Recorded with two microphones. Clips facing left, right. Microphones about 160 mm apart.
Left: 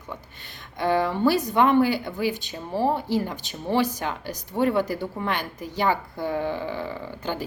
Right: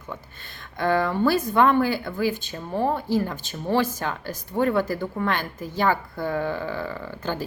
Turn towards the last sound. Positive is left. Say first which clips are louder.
# right 1 dB
turn(degrees=15)  # may be behind; listen again after turning